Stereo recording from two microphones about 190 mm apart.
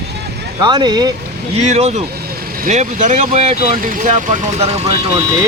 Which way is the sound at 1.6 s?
35° right (ahead or behind).